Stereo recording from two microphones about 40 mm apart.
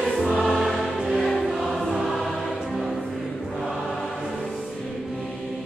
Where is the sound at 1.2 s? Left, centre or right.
Centre.